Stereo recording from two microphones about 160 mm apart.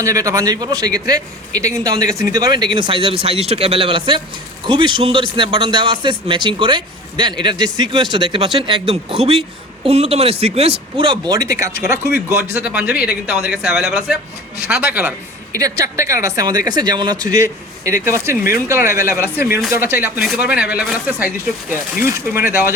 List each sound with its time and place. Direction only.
0.0 s a man's voice: 20° right (ahead or behind)
12.5 s a man's voice: 10° right (ahead or behind)